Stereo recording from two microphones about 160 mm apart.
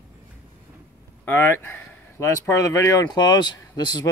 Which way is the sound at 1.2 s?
15° left (ahead or behind).